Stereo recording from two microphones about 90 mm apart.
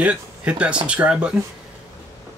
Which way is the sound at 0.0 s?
15° right (ahead or behind).